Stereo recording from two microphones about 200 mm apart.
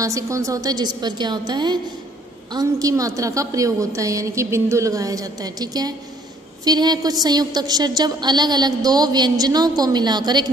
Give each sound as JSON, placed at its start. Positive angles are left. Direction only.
{"t": 0.0, "sound": "a woman's voice", "side_deg": -15}